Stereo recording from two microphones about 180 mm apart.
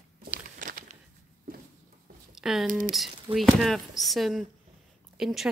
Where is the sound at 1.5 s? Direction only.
55° right (ahead or behind).